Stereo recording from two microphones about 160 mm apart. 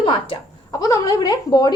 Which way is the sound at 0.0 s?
30° left (ahead or behind).